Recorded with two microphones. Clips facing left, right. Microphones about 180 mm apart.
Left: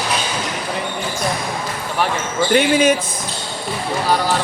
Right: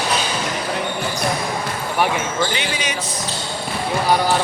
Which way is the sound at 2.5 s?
50° left (ahead or behind).